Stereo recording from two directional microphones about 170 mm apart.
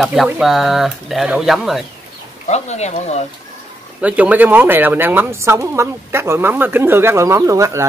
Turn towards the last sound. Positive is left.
turn(degrees=-20)  # may be behind; listen again after turning